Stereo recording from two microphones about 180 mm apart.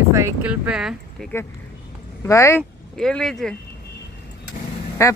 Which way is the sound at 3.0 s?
5° left (ahead or behind).